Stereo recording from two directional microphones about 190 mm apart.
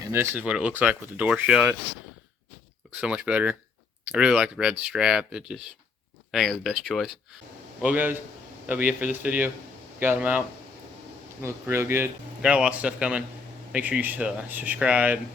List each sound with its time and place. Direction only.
0.1 s speech: 10° right (ahead or behind)
3.0 s speech: 5° right (ahead or behind)
11.4 s speech: 15° right (ahead or behind)